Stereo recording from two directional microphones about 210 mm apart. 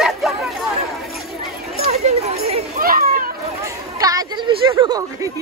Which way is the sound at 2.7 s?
45° right (ahead or behind).